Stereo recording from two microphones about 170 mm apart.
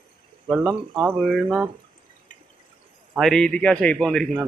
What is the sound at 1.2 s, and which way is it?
Speech, centre (ahead or behind).